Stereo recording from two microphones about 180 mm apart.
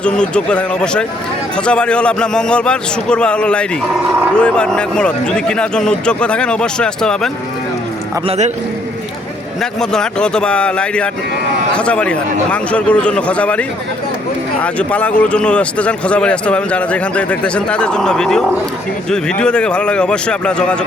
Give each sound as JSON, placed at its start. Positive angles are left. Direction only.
{"t": 0.0, "sound": "speech", "side_deg": 5}
{"t": 8.3, "sound": "a man's voice", "side_deg": -40}
{"t": 9.6, "sound": "a man's voice", "side_deg": 5}